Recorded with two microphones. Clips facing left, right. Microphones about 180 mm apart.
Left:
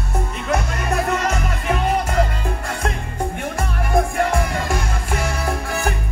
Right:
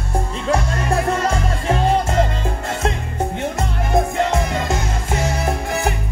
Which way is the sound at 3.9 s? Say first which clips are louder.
Right 1 dB; 20° right (ahead or behind).